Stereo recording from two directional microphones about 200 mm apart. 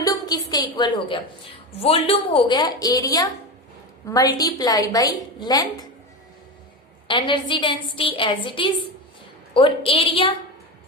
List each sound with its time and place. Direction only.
0.0 s a sound: 20° left (ahead or behind)
1.8 s a woman's voice: 30° left (ahead or behind)
7.1 s a woman's voice: 25° left (ahead or behind)